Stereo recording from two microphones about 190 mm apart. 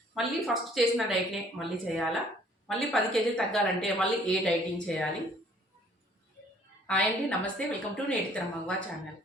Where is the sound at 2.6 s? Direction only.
5° left (ahead or behind).